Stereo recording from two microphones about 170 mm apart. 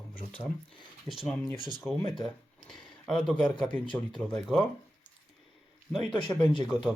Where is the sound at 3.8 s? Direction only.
30° left (ahead or behind).